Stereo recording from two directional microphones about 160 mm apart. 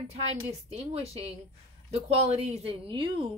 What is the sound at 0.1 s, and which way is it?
Speech, 40° right (ahead or behind).